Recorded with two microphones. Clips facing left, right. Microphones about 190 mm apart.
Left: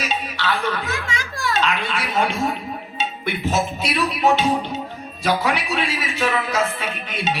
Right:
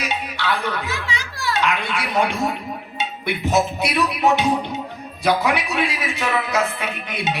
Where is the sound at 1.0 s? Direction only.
50° left (ahead or behind).